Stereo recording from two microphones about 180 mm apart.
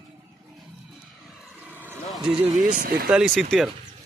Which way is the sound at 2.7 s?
50° right (ahead or behind).